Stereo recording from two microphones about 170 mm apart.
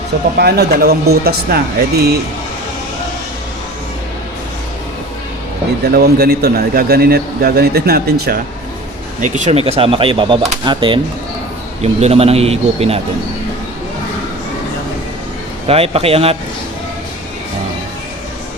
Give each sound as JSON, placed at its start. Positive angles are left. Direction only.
{"t": 0.3, "sound": "a man's voice", "side_deg": -70}
{"t": 5.8, "sound": "a man's voice", "side_deg": -65}
{"t": 9.2, "sound": "speech", "side_deg": -45}
{"t": 15.6, "sound": "speech", "side_deg": -35}